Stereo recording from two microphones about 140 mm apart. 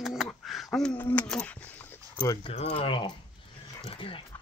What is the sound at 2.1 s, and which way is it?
Speech, 30° left (ahead or behind).